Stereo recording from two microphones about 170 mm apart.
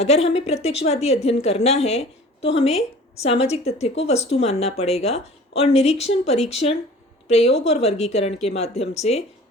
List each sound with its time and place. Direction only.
0.0 s a woman's voice: 40° left (ahead or behind)